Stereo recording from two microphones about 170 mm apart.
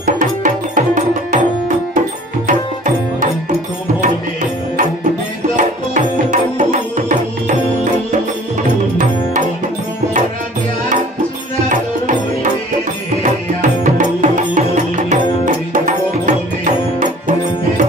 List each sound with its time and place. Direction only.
0.0 s music: 50° right (ahead or behind)
2.4 s music: 50° right (ahead or behind)
8.9 s music: 50° right (ahead or behind)
13.2 s music: 45° right (ahead or behind)